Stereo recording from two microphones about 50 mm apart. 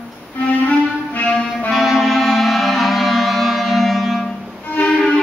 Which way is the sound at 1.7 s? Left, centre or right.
Centre.